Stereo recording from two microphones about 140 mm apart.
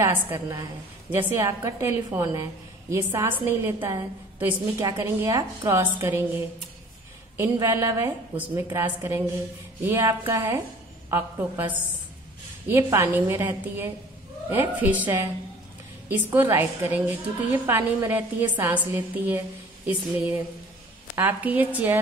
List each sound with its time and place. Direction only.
0.0 s a woman's voice: 20° right (ahead or behind)
7.6 s a woman's voice: 20° right (ahead or behind)